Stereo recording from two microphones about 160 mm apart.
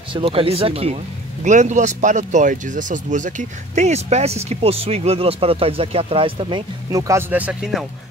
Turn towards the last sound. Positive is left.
turn(degrees=0)  # may be behind; listen again after turning